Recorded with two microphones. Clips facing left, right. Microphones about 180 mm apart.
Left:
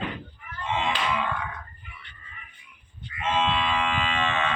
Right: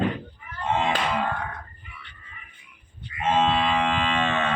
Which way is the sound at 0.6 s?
50° right (ahead or behind).